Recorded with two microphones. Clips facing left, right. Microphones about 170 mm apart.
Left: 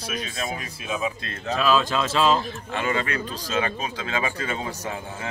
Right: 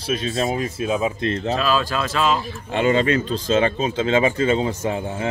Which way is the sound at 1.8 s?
25° left (ahead or behind).